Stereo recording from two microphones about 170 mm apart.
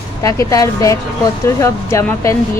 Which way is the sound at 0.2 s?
20° left (ahead or behind).